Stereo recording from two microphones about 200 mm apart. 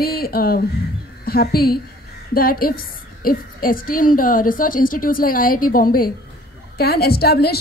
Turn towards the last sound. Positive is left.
turn(degrees=50)  # may be behind; listen again after turning